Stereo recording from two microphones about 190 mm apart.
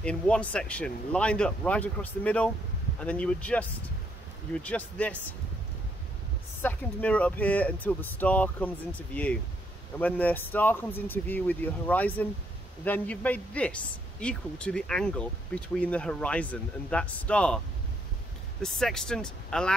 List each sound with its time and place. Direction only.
0.0 s speech: 5° left (ahead or behind)
4.6 s speech: 5° left (ahead or behind)
6.6 s speech: 10° left (ahead or behind)
18.6 s speech: centre (ahead or behind)